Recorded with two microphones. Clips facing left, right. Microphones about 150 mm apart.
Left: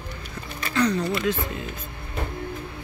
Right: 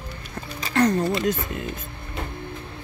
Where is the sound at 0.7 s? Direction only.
45° right (ahead or behind).